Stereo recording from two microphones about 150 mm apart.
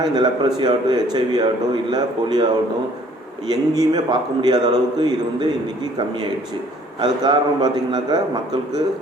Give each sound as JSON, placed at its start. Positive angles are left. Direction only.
{"t": 0.0, "sound": "a man's voice", "side_deg": -30}